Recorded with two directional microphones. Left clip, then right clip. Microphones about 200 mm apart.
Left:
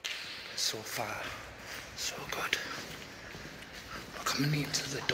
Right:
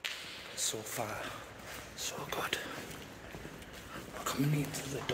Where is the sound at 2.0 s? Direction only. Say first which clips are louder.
Left 1 dB; 30° right (ahead or behind).